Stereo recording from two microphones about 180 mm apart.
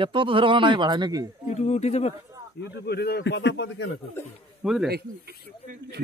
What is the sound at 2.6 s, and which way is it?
Speech, 65° left (ahead or behind).